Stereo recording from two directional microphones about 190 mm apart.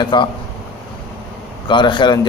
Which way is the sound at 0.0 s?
25° left (ahead or behind).